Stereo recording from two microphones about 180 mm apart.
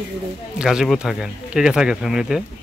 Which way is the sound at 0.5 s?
Centre (ahead or behind).